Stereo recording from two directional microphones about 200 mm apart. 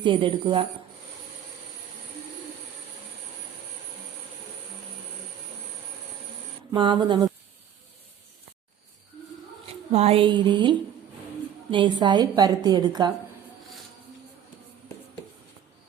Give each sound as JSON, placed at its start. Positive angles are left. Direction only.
{"t": 0.0, "sound": "a woman's voice", "side_deg": -25}
{"t": 6.7, "sound": "a woman's voice", "side_deg": -25}
{"t": 9.6, "sound": "a woman's voice", "side_deg": -30}